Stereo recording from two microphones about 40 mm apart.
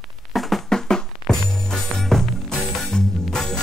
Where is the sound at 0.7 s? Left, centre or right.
Centre.